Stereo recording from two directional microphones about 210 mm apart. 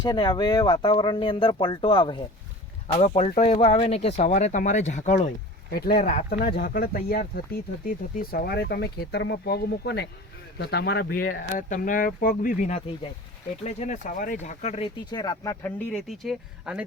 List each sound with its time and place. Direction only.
0.0 s speech: 20° left (ahead or behind)
5.7 s speech: 45° left (ahead or behind)
14.9 s speech: 20° left (ahead or behind); by 16.8 s 5° right (ahead or behind)